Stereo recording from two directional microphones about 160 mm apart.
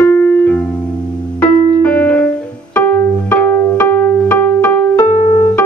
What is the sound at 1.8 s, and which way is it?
Music, 10° left (ahead or behind).